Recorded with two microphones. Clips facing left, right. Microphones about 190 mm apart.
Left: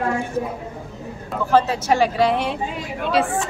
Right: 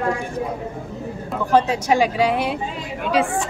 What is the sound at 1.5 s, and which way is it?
Speech, 15° right (ahead or behind).